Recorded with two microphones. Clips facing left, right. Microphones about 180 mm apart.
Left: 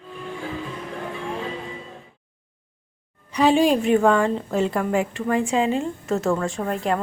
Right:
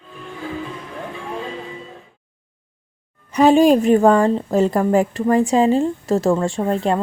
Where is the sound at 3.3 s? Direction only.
45° right (ahead or behind); by 7.0 s 30° right (ahead or behind).